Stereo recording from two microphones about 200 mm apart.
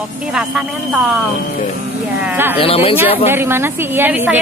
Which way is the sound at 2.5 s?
30° left (ahead or behind).